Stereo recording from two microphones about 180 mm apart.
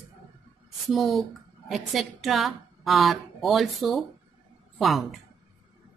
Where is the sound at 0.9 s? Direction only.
Centre (ahead or behind).